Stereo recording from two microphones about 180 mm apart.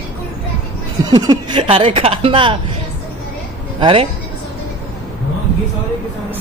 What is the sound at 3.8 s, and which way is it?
Speech, 30° right (ahead or behind).